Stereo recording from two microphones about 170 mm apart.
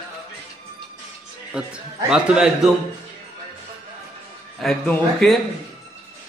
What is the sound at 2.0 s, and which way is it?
Speech, 5° right (ahead or behind).